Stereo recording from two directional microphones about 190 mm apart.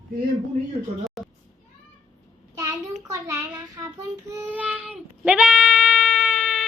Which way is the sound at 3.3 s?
15° right (ahead or behind).